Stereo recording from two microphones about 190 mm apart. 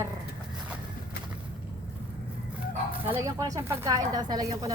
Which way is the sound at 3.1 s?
15° right (ahead or behind).